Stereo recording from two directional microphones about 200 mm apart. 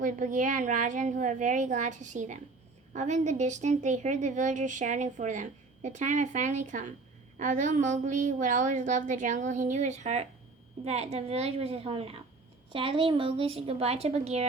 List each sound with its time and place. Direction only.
0.0 s a woman's voice: 40° right (ahead or behind)